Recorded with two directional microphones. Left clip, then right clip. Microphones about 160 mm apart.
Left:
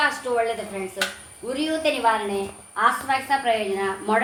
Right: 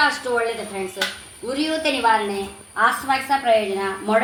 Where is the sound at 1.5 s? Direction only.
45° right (ahead or behind).